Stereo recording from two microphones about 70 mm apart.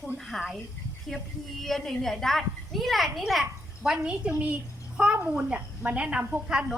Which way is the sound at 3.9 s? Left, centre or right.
Centre.